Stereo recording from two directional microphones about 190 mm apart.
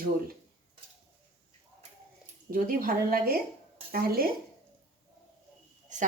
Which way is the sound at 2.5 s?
45° right (ahead or behind).